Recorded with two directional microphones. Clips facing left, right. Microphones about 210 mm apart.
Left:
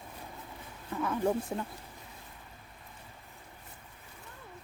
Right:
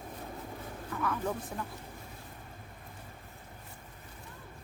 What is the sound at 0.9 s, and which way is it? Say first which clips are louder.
Speech: left 4 dB; 25° left (ahead or behind).